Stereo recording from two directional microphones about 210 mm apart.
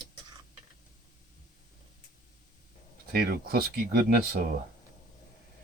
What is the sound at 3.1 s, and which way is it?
Speech, 45° right (ahead or behind).